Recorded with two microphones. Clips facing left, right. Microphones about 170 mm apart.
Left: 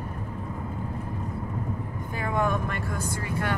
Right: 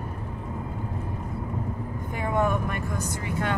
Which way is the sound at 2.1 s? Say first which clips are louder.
Right 1 dB; 15° right (ahead or behind).